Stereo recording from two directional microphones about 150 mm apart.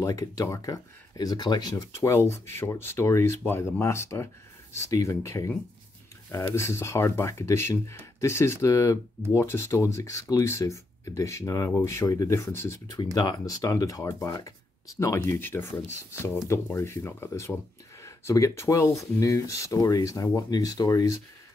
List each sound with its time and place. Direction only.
0.0 s speech: 25° left (ahead or behind)
6.5 s speech: 15° left (ahead or behind)